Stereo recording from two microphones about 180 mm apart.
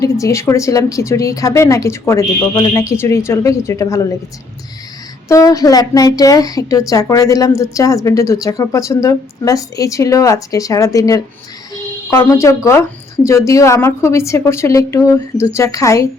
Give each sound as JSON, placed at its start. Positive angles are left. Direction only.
{"t": 0.0, "sound": "a woman's voice", "side_deg": 15}
{"t": 5.3, "sound": "a woman's voice", "side_deg": 20}
{"t": 11.7, "sound": "a sound", "side_deg": 20}
{"t": 13.2, "sound": "a woman's voice", "side_deg": 15}